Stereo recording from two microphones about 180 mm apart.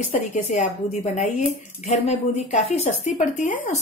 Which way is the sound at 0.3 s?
40° left (ahead or behind).